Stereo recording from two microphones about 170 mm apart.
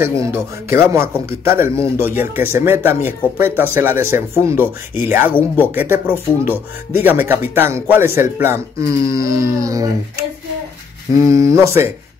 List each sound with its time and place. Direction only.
0.0 s a man's voice: 15° right (ahead or behind)
11.1 s a man's voice: 20° right (ahead or behind)